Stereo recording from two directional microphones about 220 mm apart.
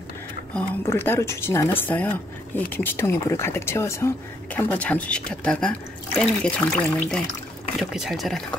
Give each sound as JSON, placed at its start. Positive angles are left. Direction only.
{"t": 0.6, "sound": "speech", "side_deg": 10}